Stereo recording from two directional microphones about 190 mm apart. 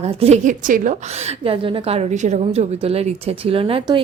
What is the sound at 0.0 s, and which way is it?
A woman's voice, 35° right (ahead or behind).